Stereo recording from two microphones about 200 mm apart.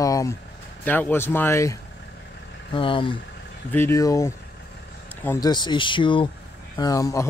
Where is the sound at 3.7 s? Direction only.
15° left (ahead or behind).